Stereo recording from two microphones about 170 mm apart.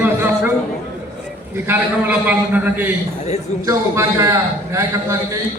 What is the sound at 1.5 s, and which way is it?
A man's voice, 10° right (ahead or behind).